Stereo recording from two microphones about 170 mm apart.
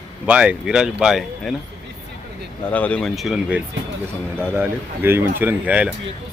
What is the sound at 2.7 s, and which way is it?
A man's voice, 10° left (ahead or behind).